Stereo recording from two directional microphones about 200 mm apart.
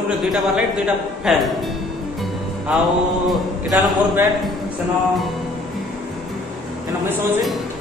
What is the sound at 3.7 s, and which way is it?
Speech, 10° right (ahead or behind).